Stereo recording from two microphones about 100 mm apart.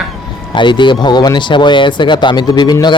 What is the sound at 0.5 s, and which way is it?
Speech, 50° left (ahead or behind).